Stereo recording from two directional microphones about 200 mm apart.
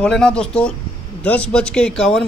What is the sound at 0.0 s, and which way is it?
Speech, 5° left (ahead or behind).